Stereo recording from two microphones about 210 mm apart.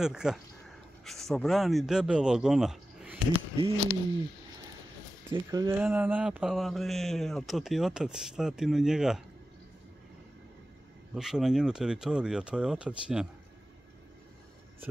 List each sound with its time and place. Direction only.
0.0 s speech: 5° right (ahead or behind)
3.5 s speech: 25° right (ahead or behind)
5.3 s speech: 15° right (ahead or behind)
11.1 s speech: centre (ahead or behind)